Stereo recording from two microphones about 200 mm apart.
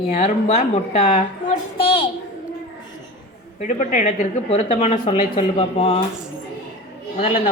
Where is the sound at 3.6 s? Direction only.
35° left (ahead or behind).